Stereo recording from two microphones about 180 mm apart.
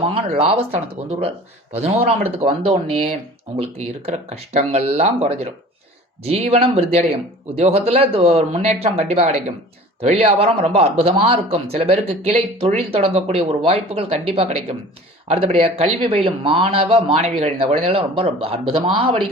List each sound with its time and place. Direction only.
0.3 s speech: 35° right (ahead or behind)